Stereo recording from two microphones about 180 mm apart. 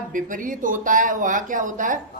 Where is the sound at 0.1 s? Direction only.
45° right (ahead or behind).